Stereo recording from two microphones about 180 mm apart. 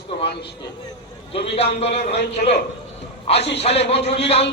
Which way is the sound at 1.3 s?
35° left (ahead or behind).